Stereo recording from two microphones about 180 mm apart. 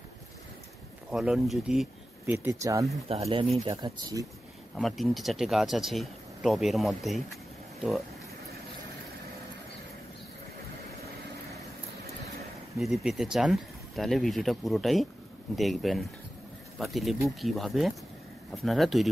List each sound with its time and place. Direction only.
1.1 s speech: centre (ahead or behind)
2.3 s speech: 15° right (ahead or behind)
3.1 s speech: 30° right (ahead or behind)
4.7 s speech: centre (ahead or behind)
12.7 s speech: centre (ahead or behind)